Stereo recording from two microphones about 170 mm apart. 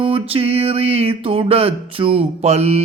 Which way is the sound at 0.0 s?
35° right (ahead or behind).